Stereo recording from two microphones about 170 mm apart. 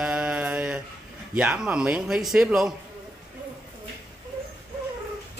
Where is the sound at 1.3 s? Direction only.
5° right (ahead or behind).